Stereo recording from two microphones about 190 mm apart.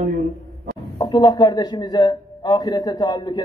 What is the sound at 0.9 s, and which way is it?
A man's voice, 20° left (ahead or behind).